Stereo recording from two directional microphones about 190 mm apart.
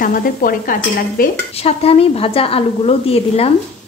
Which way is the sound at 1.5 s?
30° left (ahead or behind).